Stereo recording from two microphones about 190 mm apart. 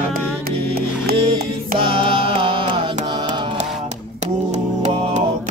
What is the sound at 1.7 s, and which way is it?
Music, 25° right (ahead or behind).